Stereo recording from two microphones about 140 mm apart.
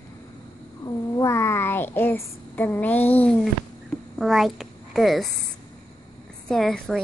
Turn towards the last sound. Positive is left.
turn(degrees=0)  # may be behind; listen again after turning